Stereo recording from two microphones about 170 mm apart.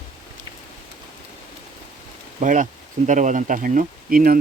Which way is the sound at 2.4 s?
50° right (ahead or behind).